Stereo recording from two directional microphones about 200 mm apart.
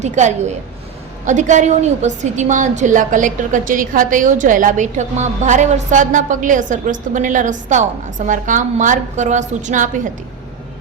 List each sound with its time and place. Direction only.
0.0 s a woman's voice: 35° right (ahead or behind)